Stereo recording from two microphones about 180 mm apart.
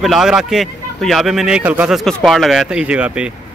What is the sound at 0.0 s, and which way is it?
A man's voice, centre (ahead or behind).